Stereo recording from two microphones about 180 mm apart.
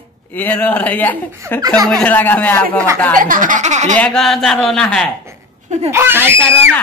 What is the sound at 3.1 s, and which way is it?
Speech, 50° right (ahead or behind).